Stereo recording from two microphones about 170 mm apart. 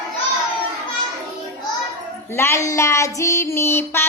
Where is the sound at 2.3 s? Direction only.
15° left (ahead or behind).